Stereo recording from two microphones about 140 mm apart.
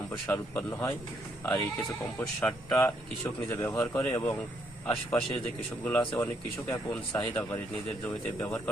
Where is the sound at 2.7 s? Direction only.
20° left (ahead or behind).